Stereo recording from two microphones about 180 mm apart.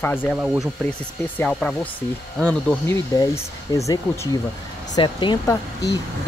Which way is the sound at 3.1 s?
20° left (ahead or behind).